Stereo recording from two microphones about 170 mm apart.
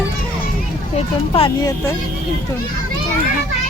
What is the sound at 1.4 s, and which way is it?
Speech, 30° left (ahead or behind).